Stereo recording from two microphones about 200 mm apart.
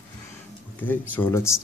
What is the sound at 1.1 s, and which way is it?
Speech, 10° left (ahead or behind).